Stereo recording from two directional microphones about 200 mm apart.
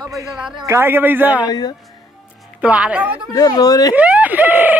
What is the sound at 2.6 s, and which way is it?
Speech, 5° right (ahead or behind).